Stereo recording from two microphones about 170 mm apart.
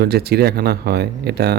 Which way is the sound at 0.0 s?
70° right (ahead or behind).